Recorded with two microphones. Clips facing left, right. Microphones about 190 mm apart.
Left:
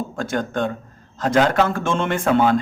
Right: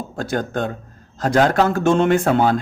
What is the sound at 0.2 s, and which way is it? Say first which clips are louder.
Speech: right 1 dB; 40° right (ahead or behind).